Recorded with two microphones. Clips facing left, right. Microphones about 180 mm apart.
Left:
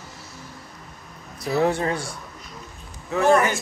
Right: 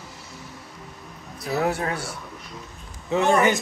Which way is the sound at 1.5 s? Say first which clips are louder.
Left 3 dB; 5° right (ahead or behind).